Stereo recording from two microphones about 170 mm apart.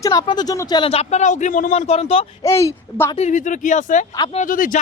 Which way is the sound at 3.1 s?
45° left (ahead or behind).